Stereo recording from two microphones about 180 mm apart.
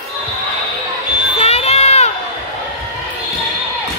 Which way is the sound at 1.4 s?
35° left (ahead or behind).